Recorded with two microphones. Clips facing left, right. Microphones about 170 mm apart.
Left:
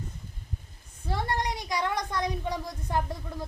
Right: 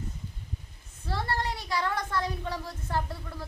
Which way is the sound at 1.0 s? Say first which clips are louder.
Left 1 dB; 15° left (ahead or behind).